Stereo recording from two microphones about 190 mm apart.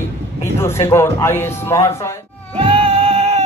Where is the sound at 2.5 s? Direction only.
30° right (ahead or behind).